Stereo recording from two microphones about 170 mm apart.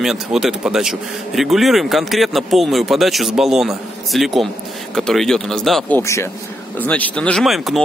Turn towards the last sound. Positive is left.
turn(degrees=0)  # may be behind; listen again after turning